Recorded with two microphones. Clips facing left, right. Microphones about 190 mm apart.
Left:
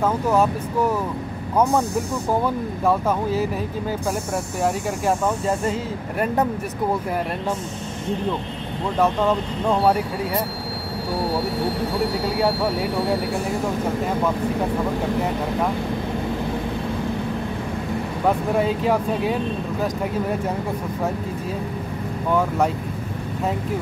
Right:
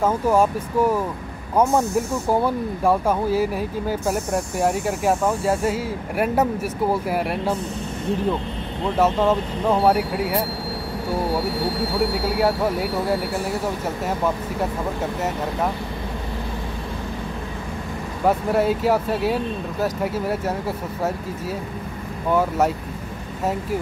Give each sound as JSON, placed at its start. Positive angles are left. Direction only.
{"t": 0.0, "sound": "speech", "side_deg": -10}
{"t": 2.4, "sound": "speech", "side_deg": -10}
{"t": 8.9, "sound": "speech", "side_deg": -10}
{"t": 18.6, "sound": "speech", "side_deg": -5}
{"t": 22.3, "sound": "speech", "side_deg": -10}